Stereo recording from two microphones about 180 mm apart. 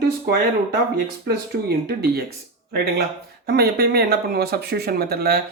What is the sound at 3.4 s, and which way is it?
Speech, 60° right (ahead or behind).